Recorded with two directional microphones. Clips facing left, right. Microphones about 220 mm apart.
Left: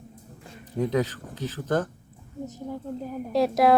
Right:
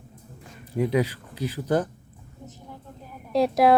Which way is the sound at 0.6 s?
10° right (ahead or behind).